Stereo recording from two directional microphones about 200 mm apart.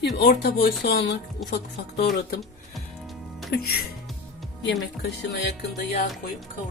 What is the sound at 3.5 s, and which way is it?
Speech, 55° left (ahead or behind).